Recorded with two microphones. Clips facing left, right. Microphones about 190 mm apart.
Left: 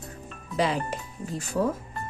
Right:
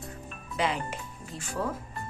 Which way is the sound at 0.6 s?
40° left (ahead or behind).